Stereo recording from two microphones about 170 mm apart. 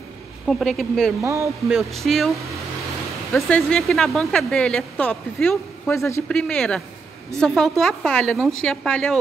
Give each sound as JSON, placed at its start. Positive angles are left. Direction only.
{"t": 0.5, "sound": "speech", "side_deg": 0}
{"t": 1.2, "sound": "speech", "side_deg": -15}
{"t": 1.7, "sound": "speech", "side_deg": 0}
{"t": 3.3, "sound": "speech", "side_deg": 5}
{"t": 6.2, "sound": "speech", "side_deg": 5}